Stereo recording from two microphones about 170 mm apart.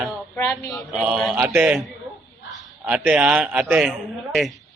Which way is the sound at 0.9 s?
5° right (ahead or behind).